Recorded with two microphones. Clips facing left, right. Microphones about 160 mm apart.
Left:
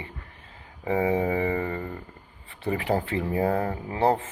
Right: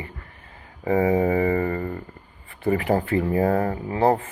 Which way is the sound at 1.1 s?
45° right (ahead or behind).